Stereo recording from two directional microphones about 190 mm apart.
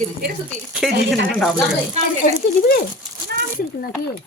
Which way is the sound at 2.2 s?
45° left (ahead or behind).